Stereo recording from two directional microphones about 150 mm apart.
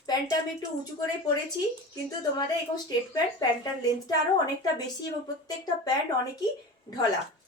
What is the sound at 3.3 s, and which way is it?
Speech, 25° left (ahead or behind).